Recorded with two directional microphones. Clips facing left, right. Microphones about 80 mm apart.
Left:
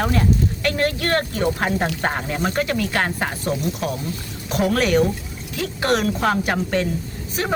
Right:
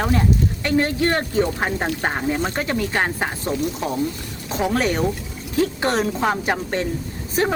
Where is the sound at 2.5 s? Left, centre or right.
Right.